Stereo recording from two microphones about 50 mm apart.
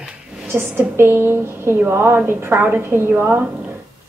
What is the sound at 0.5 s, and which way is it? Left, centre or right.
A woman's voice, right.